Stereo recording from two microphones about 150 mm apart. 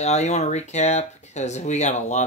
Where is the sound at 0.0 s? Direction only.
50° left (ahead or behind).